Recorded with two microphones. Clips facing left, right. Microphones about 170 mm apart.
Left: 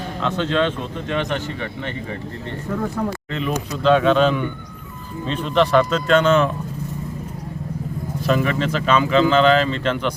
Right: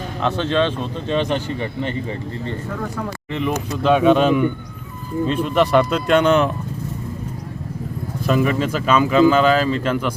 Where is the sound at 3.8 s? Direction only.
10° right (ahead or behind).